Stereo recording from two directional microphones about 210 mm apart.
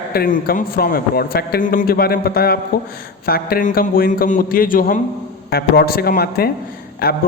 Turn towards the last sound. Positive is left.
turn(degrees=45)  # may be behind; listen again after turning